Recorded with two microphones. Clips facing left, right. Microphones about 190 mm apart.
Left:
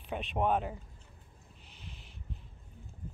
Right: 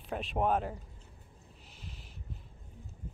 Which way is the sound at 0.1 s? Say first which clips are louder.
Even; centre (ahead or behind).